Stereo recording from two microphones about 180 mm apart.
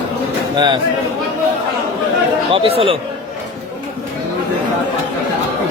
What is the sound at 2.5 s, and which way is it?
Speech, 30° right (ahead or behind).